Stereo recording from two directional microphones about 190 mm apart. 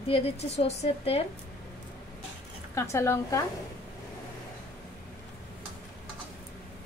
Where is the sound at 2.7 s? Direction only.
15° left (ahead or behind).